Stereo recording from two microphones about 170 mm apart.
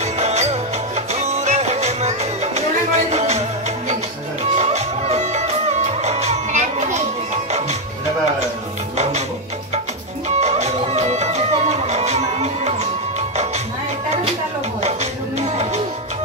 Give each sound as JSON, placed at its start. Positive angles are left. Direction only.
{"t": 0.2, "sound": "music", "side_deg": -40}
{"t": 4.6, "sound": "music", "side_deg": -40}
{"t": 10.4, "sound": "music", "side_deg": -40}